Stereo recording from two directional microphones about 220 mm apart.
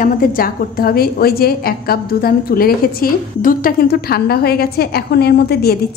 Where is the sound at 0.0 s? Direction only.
40° left (ahead or behind).